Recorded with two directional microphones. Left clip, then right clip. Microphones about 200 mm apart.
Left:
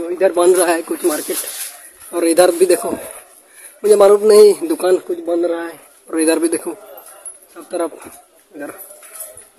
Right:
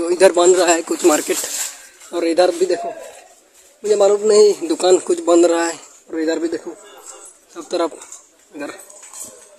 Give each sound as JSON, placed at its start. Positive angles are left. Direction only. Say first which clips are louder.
{"t": 0.0, "sound": "a sound", "louder": "right 3 dB", "side_deg": -15}
{"t": 0.4, "sound": "a man's voice", "louder": "even", "side_deg": 0}
{"t": 1.0, "sound": "speech", "louder": "right 6 dB", "side_deg": -15}
{"t": 2.0, "sound": "a man's voice", "louder": "left 3 dB", "side_deg": 5}
{"t": 3.8, "sound": "a man's voice", "louder": "left 5 dB", "side_deg": 15}
{"t": 4.7, "sound": "a man's voice", "louder": "right 1 dB", "side_deg": 0}
{"t": 5.0, "sound": "speech", "louder": "right 5 dB", "side_deg": -20}
{"t": 6.0, "sound": "a man's voice", "louder": "left 5 dB", "side_deg": 15}
{"t": 7.5, "sound": "speech", "louder": "right 1 dB", "side_deg": -5}